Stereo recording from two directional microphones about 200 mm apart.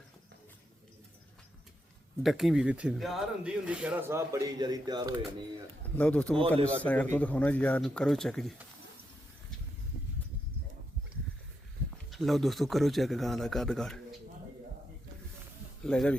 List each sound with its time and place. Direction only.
2.2 s speech: centre (ahead or behind); by 5.2 s 20° right (ahead or behind)
6.0 s speech: 5° left (ahead or behind)
12.1 s speech: centre (ahead or behind)
15.8 s speech: 5° left (ahead or behind)